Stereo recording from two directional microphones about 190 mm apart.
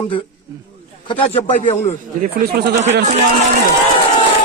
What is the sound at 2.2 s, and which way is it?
Speech, 55° right (ahead or behind).